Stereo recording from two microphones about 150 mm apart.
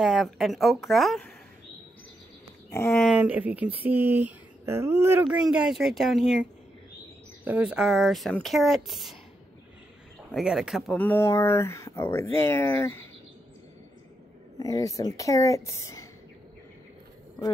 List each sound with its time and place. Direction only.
0.0 s speech: centre (ahead or behind)
3.1 s speech: 10° right (ahead or behind)
7.4 s speech: 10° right (ahead or behind)
10.3 s speech: 5° right (ahead or behind)
11.0 s speech: 15° left (ahead or behind)
14.6 s speech: 25° left (ahead or behind)